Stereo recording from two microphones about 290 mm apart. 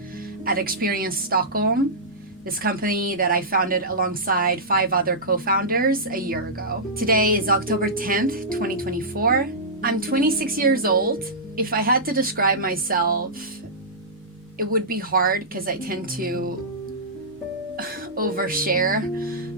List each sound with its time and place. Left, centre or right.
0.4 s a woman's voice: right
14.6 s speech: right
17.7 s speech: right